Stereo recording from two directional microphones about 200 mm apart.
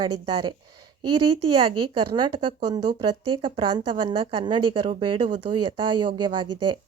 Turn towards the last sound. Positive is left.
turn(degrees=-25)  # may be behind; listen again after turning